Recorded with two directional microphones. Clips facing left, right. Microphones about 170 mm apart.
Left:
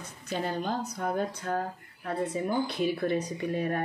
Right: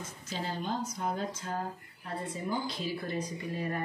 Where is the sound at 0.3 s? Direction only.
55° left (ahead or behind).